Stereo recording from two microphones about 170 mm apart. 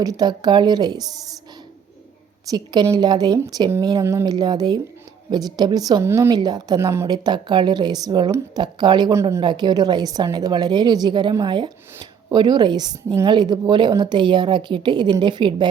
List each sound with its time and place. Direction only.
0.0 s a woman's voice: 20° right (ahead or behind)
2.5 s a woman's voice: 20° right (ahead or behind)